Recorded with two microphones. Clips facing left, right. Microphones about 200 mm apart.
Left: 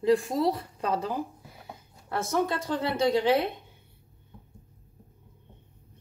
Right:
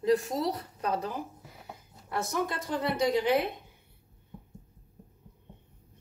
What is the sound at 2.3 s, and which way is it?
Speech, 30° left (ahead or behind).